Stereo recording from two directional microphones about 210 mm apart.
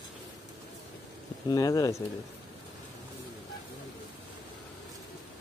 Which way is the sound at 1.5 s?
15° left (ahead or behind).